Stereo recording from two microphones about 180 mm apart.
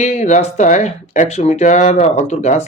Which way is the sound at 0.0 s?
40° left (ahead or behind).